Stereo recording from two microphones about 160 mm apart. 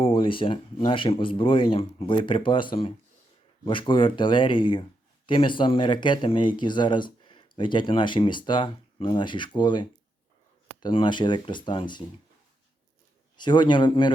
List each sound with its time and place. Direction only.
0.0 s speech: 35° left (ahead or behind)
13.3 s speech: 30° left (ahead or behind)